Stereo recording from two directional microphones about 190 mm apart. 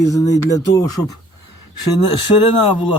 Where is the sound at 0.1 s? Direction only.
15° left (ahead or behind).